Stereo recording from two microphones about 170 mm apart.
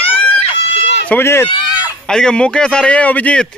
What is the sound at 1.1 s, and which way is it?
Speech, 15° left (ahead or behind).